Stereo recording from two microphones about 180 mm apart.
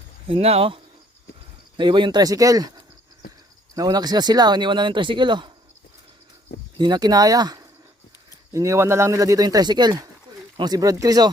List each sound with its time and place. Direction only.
0.3 s speech: 35° right (ahead or behind)
1.8 s speech: 25° right (ahead or behind)
6.7 s speech: 25° right (ahead or behind)